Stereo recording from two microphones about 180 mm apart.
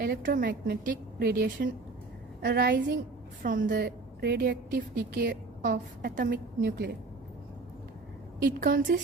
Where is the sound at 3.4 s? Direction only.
50° right (ahead or behind).